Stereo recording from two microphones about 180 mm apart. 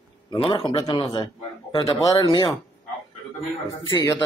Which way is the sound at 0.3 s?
30° left (ahead or behind).